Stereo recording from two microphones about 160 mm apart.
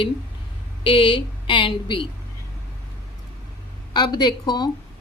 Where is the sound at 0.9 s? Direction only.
30° left (ahead or behind).